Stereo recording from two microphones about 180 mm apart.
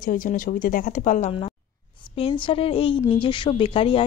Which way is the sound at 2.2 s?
30° left (ahead or behind).